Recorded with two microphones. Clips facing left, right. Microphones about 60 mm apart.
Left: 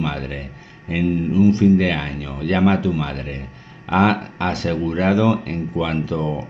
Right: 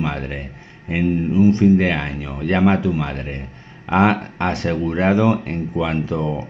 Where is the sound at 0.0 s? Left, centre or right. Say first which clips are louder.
Right 1 dB; right.